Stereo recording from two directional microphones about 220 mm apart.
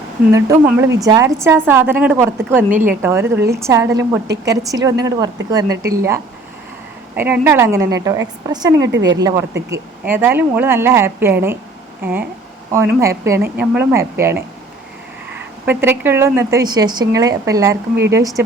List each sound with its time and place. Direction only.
0.3 s speech: 15° right (ahead or behind)
7.2 s speech: 10° right (ahead or behind)
8.9 s speech: 55° right (ahead or behind)
9.1 s speech: 15° right (ahead or behind)